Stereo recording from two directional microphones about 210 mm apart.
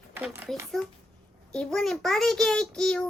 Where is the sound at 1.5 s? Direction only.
5° left (ahead or behind).